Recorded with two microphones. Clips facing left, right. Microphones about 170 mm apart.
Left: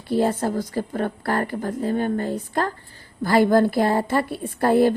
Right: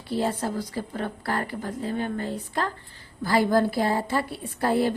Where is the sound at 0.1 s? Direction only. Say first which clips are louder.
Left 5 dB; 45° left (ahead or behind).